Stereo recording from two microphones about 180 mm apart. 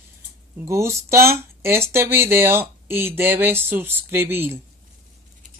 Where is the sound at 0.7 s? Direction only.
15° right (ahead or behind).